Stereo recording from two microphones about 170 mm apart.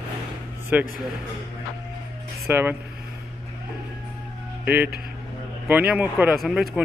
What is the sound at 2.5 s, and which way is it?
Speech, 15° right (ahead or behind).